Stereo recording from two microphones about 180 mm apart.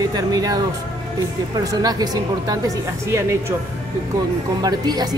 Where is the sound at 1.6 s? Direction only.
20° right (ahead or behind).